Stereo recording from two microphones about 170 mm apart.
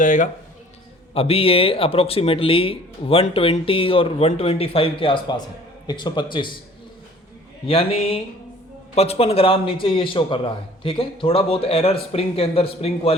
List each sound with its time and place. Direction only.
0.0 s speech: 50° left (ahead or behind)
1.1 s a man's voice: 35° left (ahead or behind)
7.7 s speech: 35° left (ahead or behind)